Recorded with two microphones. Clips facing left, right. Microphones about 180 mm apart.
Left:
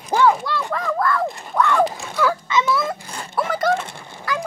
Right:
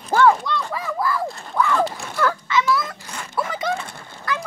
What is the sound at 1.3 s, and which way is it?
Speech, 15° left (ahead or behind).